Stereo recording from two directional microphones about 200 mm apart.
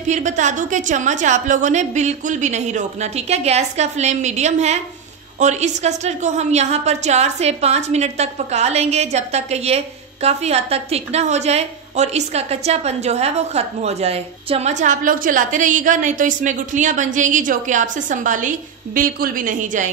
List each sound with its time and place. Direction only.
0.1 s a woman's voice: 35° right (ahead or behind)